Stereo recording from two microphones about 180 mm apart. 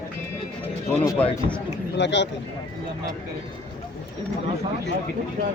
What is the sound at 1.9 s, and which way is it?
Speech, 80° left.